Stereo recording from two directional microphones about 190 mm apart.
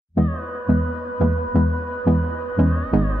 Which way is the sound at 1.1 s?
Centre (ahead or behind).